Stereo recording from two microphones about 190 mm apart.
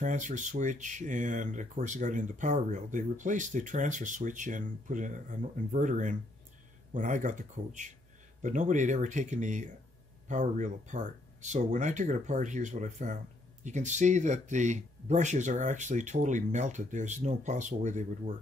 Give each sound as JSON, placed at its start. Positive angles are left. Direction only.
{"t": 0.0, "sound": "speech", "side_deg": -40}